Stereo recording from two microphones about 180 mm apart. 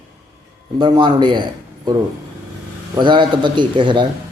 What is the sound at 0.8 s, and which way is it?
Mantra, 25° right (ahead or behind).